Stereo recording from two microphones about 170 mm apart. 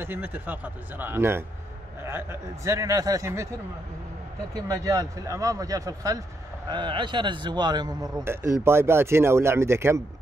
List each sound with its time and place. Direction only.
0.0 s speech: 10° right (ahead or behind)
4.6 s a man's voice: 20° right (ahead or behind)